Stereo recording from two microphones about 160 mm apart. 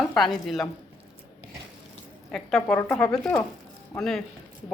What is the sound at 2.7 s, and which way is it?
Speech, 15° left (ahead or behind).